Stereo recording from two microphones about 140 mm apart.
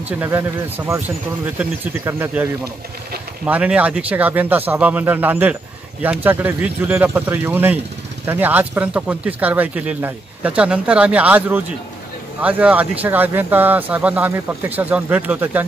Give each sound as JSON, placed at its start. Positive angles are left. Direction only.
{"t": 0.2, "sound": "speech", "side_deg": -15}
{"t": 3.4, "sound": "speech", "side_deg": -10}